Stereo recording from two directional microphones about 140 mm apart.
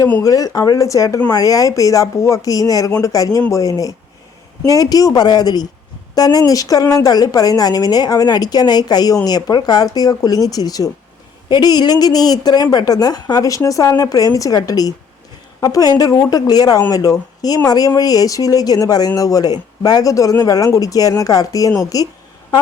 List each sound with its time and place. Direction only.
0.0 s speech: 20° left (ahead or behind)